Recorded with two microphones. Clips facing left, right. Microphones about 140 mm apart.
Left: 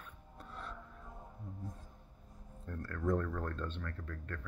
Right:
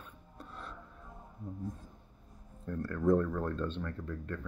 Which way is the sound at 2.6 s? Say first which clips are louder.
Right 7 dB; 15° right (ahead or behind).